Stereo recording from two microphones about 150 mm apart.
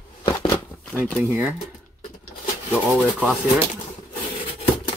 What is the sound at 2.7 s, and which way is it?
Speech, 5° right (ahead or behind).